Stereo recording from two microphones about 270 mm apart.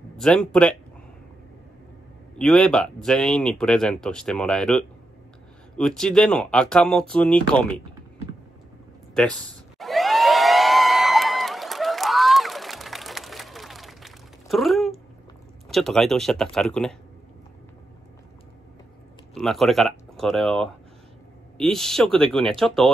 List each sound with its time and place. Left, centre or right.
0.2 s speech: centre
2.3 s speech: centre
9.8 s a sound: centre
15.7 s speech: centre
19.3 s speech: centre